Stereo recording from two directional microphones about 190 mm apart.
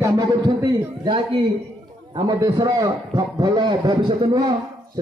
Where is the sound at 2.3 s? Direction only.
20° right (ahead or behind).